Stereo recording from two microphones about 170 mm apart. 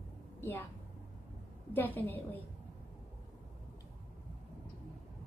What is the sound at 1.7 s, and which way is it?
Speech, 10° left (ahead or behind).